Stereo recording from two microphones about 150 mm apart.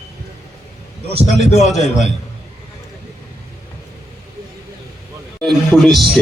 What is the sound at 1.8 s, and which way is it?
Speech, 50° left (ahead or behind).